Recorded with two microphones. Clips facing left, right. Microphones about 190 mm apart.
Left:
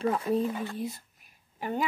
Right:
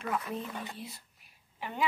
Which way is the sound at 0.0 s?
30° left (ahead or behind).